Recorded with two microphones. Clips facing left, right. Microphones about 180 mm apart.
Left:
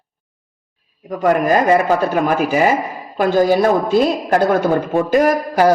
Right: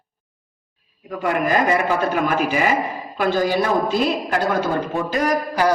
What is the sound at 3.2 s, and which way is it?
Speech, 45° left (ahead or behind).